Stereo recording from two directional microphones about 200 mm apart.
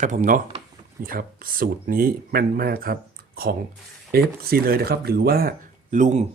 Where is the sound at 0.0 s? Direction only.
40° right (ahead or behind).